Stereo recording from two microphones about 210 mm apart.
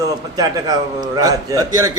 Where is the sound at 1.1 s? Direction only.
15° right (ahead or behind).